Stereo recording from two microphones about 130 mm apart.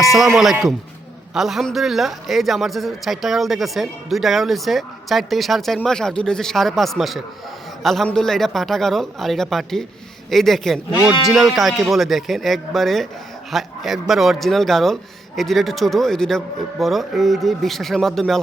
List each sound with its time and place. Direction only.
0.0 s a man's voice: centre (ahead or behind)